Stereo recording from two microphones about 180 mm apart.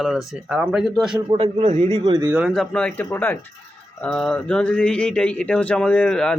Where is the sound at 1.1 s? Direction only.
30° right (ahead or behind).